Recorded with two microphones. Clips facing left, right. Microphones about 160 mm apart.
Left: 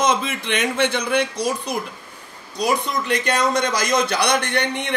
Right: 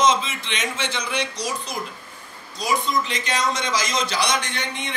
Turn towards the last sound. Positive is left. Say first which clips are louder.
# left 7 dB
turn(degrees=65)  # may be behind; listen again after turning